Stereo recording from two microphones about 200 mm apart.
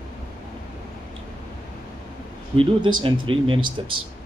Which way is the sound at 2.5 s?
25° right (ahead or behind).